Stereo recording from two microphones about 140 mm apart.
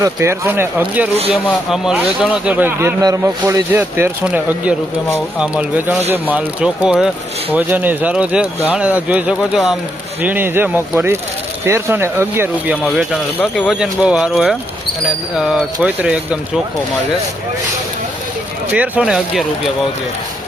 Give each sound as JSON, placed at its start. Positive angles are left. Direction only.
{"t": 0.0, "sound": "speech", "side_deg": -20}
{"t": 12.8, "sound": "speech", "side_deg": 0}
{"t": 18.7, "sound": "speech", "side_deg": -10}